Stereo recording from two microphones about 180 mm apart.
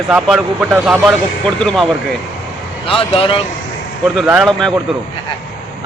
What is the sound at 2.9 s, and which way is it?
Speech, 30° left (ahead or behind).